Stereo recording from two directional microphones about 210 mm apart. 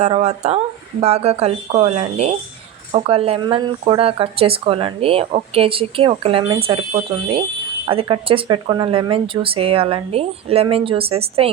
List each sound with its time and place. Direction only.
0.0 s speech: 30° right (ahead or behind)